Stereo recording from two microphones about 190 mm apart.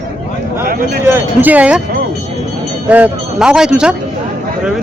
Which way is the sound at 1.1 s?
10° right (ahead or behind).